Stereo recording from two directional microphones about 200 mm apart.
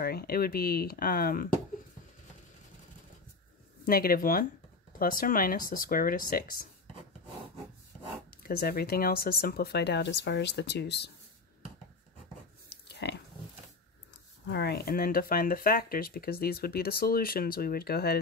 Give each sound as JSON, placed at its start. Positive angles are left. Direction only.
{"t": 0.0, "sound": "speech", "side_deg": 50}
{"t": 3.8, "sound": "speech", "side_deg": 45}
{"t": 8.4, "sound": "speech", "side_deg": 50}
{"t": 12.6, "sound": "a sound", "side_deg": 55}
{"t": 14.4, "sound": "speech", "side_deg": 55}